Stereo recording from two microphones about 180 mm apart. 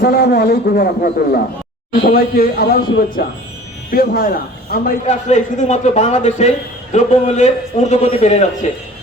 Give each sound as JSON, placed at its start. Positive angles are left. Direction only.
{"t": 0.0, "sound": "a man's voice", "side_deg": 60}